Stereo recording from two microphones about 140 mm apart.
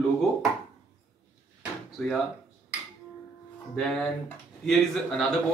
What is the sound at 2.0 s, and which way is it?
Speech, centre (ahead or behind).